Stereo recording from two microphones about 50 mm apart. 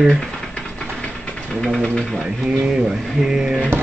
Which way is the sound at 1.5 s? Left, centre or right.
Centre.